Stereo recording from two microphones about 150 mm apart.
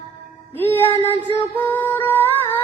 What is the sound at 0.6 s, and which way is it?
Music, 15° left (ahead or behind).